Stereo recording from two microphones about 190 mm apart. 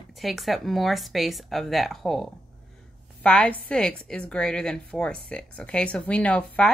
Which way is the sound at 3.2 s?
5° left (ahead or behind).